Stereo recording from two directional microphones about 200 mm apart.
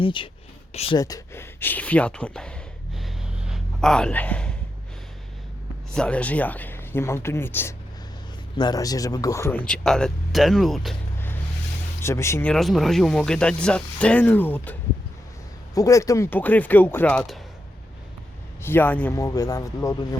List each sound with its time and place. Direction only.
0.0 s speech: 25° left (ahead or behind)
0.9 s a sound: 20° left (ahead or behind)
5.9 s speech: 5° left (ahead or behind)
11.9 s speech: 15° left (ahead or behind)
18.6 s speech: 10° left (ahead or behind)